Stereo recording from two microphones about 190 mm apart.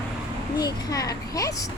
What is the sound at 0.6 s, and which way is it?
A child's voice, 20° left (ahead or behind).